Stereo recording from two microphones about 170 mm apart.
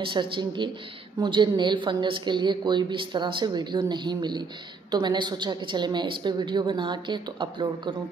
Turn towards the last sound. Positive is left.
turn(degrees=-25)  # may be behind; listen again after turning